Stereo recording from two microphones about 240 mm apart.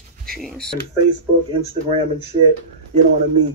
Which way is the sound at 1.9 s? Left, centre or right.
Right.